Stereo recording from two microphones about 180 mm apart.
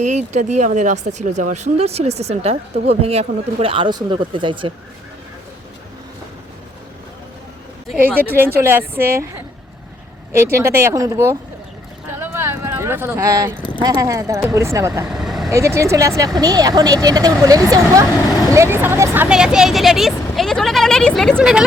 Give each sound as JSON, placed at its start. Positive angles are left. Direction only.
{"t": 0.0, "sound": "speech", "side_deg": -40}
{"t": 7.9, "sound": "speech", "side_deg": -10}
{"t": 10.3, "sound": "speech", "side_deg": -15}
{"t": 12.2, "sound": "a sound", "side_deg": -15}
{"t": 13.6, "sound": "a sound", "side_deg": 25}
{"t": 13.8, "sound": "speech", "side_deg": -20}
{"t": 15.0, "sound": "vehicle", "side_deg": -5}
{"t": 15.4, "sound": "speech", "side_deg": -15}